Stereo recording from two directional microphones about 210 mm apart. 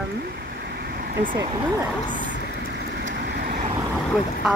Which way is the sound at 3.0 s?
50° right (ahead or behind).